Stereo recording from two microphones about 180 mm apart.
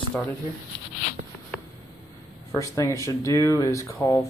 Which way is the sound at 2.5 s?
15° left (ahead or behind).